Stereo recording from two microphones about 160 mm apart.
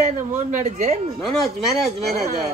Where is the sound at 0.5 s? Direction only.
45° right (ahead or behind).